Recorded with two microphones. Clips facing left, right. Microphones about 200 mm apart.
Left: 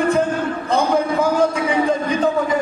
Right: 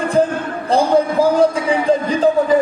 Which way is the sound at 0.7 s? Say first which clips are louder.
Right 4 dB; 35° right (ahead or behind).